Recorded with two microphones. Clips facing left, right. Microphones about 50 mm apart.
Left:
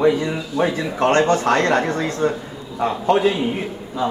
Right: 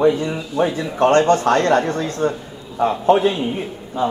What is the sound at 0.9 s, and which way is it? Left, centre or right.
Speech, left.